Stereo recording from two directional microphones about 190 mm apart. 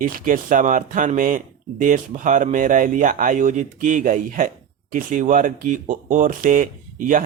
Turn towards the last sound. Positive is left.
turn(degrees=-45)  # may be behind; listen again after turning